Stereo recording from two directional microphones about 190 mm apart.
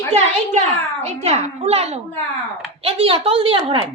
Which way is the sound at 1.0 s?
35° right (ahead or behind).